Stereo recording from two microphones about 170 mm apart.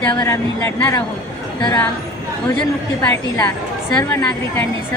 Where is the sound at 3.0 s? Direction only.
15° left (ahead or behind).